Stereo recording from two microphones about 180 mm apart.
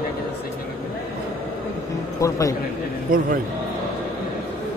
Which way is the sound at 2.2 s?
20° left (ahead or behind).